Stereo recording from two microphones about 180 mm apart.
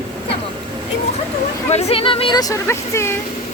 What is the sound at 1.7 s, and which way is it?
Speech, 35° left (ahead or behind).